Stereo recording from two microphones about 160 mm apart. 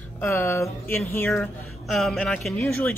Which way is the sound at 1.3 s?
Centre (ahead or behind).